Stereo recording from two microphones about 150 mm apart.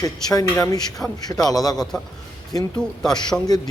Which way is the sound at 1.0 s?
5° left (ahead or behind).